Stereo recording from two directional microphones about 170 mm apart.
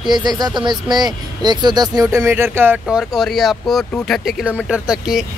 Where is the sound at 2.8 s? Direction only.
Centre (ahead or behind).